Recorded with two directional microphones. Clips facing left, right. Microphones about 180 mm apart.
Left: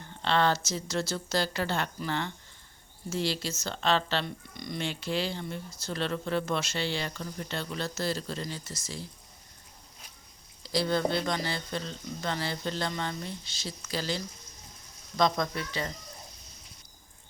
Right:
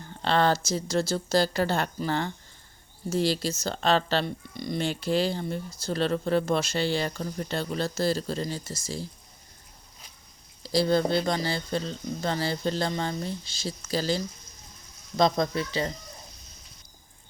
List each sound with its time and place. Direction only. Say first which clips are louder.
0.2 s speech: right 3 dB; 40° right (ahead or behind)
10.6 s speech: right 4 dB; 35° right (ahead or behind)